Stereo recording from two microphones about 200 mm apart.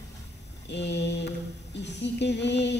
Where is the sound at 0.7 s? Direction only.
60° left (ahead or behind).